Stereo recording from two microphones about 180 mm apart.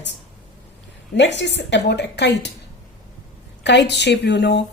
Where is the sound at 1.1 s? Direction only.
80° left.